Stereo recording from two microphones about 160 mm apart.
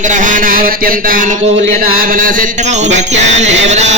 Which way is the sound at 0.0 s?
55° right (ahead or behind).